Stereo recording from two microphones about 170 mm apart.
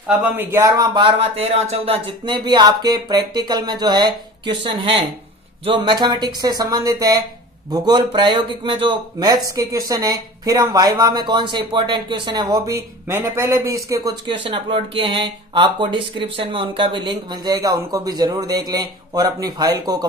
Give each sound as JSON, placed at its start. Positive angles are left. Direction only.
{"t": 0.2, "sound": "a man's voice", "side_deg": -15}